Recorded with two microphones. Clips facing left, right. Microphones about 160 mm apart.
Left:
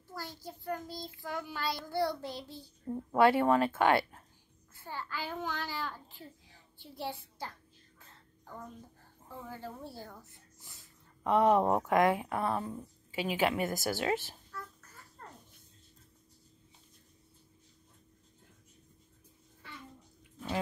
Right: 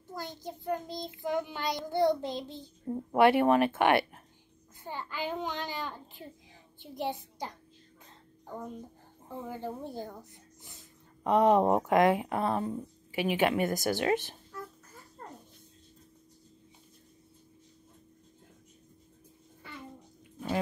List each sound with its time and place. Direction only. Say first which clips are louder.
0.1 s child singing: right 4 dB; 20° right (ahead or behind)
6.8 s a child's voice: right 5 dB; 20° right (ahead or behind)
8.0 s music: right 3 dB; 20° right (ahead or behind)
9.3 s speech: right 6 dB; 20° right (ahead or behind)
13.3 s child singing: right 3 dB; 20° right (ahead or behind)
14.1 s a sound: right 4 dB; 20° right (ahead or behind)